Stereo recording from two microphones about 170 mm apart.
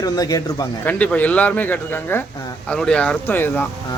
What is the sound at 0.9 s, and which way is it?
Speech, 10° left (ahead or behind).